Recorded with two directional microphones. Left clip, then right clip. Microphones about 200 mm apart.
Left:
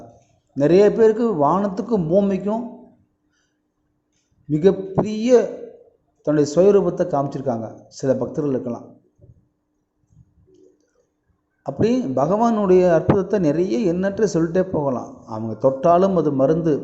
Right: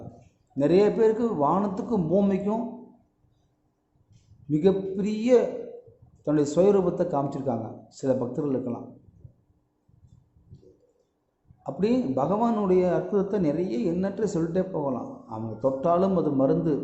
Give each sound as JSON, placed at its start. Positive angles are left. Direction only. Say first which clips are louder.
{"t": 0.5, "sound": "a man's voice", "louder": "left 7 dB", "side_deg": 20}
{"t": 4.5, "sound": "a man's voice", "louder": "left 6 dB", "side_deg": 20}
{"t": 11.6, "sound": "a man's voice", "louder": "left 5 dB", "side_deg": 20}